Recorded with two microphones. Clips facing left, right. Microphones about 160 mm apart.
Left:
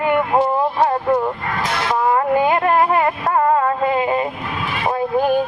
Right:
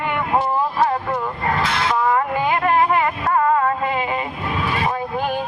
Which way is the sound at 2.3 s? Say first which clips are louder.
Left 3 dB; 45° left (ahead or behind).